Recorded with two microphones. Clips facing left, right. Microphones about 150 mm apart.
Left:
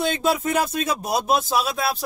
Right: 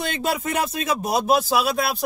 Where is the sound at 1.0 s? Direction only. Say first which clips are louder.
Right 4 dB; centre (ahead or behind).